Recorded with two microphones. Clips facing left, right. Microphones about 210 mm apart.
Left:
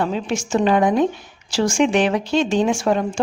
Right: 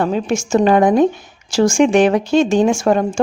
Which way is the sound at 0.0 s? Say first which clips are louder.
Right 4 dB; 45° right (ahead or behind).